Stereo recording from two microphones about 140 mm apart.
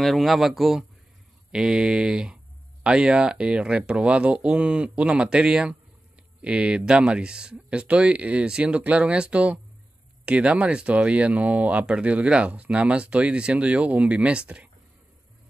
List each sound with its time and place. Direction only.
0.0 s speech: centre (ahead or behind)